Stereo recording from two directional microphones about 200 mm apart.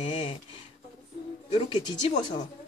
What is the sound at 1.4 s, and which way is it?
Speech, 25° left (ahead or behind).